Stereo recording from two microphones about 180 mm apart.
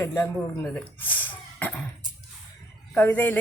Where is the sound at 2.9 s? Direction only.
10° left (ahead or behind).